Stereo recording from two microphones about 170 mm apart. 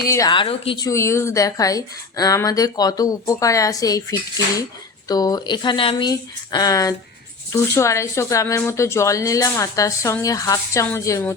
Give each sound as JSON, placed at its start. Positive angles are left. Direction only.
{"t": 0.1, "sound": "a woman's voice", "side_deg": 25}
{"t": 0.9, "sound": "a woman's voice", "side_deg": 15}